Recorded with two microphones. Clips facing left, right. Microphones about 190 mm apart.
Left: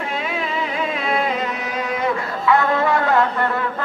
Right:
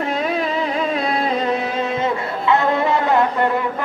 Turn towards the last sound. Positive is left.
turn(degrees=-20)  # may be behind; listen again after turning